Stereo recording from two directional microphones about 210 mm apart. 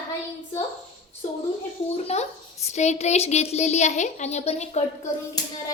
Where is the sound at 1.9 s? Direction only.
30° left (ahead or behind).